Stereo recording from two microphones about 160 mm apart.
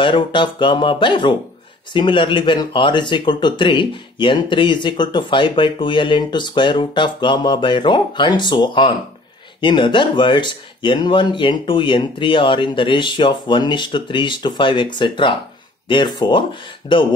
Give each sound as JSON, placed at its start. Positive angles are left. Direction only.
{"t": 0.0, "sound": "speech", "side_deg": 30}